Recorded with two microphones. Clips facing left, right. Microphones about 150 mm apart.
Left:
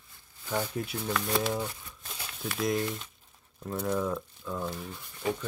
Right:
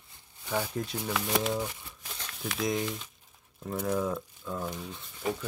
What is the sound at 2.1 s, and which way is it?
Speech, 5° left (ahead or behind).